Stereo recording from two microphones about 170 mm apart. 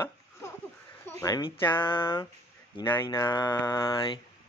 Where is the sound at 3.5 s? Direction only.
15° left (ahead or behind).